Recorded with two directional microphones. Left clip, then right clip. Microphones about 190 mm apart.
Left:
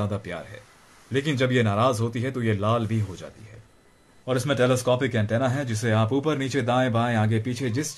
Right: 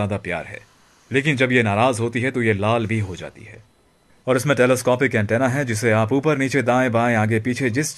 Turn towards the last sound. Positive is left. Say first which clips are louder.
# right 7 dB
turn(degrees=-40)  # may be behind; listen again after turning